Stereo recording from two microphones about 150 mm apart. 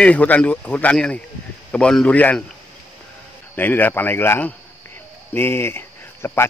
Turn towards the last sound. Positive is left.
turn(degrees=15)  # may be behind; listen again after turning